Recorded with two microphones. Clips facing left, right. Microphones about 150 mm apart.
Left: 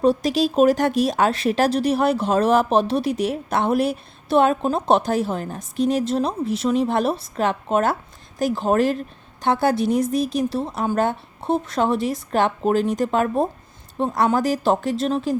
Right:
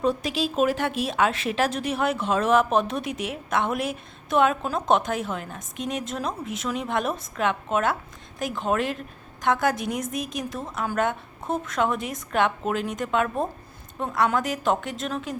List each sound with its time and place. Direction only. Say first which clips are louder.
0.0 s speech: left 6 dB; 35° left (ahead or behind)